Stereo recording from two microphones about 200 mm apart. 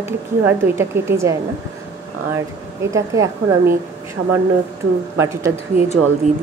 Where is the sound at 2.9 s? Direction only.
15° right (ahead or behind).